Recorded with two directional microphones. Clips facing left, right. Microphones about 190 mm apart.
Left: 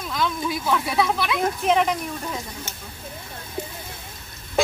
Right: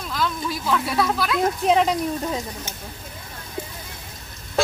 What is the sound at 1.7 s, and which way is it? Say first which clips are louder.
Speech: right 1 dB; 30° right (ahead or behind).